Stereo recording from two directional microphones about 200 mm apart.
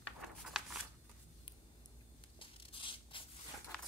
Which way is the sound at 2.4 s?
25° left (ahead or behind).